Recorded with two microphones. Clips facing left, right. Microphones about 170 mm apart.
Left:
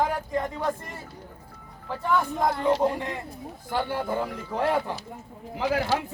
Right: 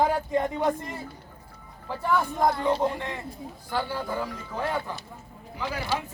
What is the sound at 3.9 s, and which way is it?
Speech, 25° left (ahead or behind).